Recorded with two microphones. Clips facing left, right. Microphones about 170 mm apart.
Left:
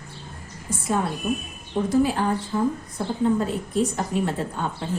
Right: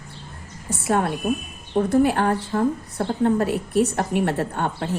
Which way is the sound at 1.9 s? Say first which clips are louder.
Right 2 dB; 65° right (ahead or behind).